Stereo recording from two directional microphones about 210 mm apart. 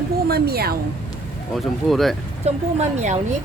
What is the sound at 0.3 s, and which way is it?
Speech, 50° right (ahead or behind).